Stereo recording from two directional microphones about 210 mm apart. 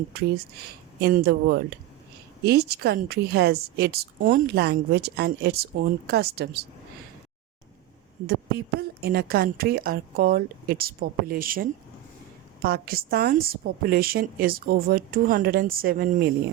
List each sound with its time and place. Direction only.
0.1 s a woman's voice: 50° right (ahead or behind)
8.3 s a woman's voice: 50° right (ahead or behind)